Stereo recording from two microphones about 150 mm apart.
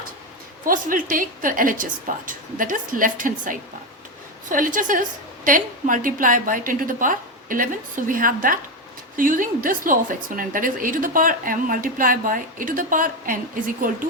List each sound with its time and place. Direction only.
0.6 s a woman's voice: 65° right (ahead or behind)